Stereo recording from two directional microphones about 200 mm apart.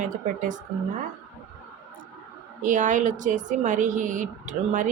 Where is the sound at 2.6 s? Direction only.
40° right (ahead or behind).